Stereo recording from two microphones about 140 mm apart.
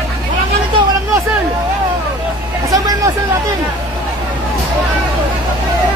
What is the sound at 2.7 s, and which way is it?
Hubbub, 25° right (ahead or behind).